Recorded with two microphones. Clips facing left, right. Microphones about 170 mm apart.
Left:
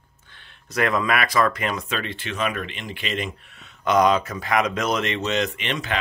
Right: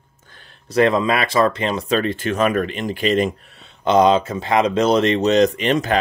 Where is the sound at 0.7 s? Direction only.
25° right (ahead or behind).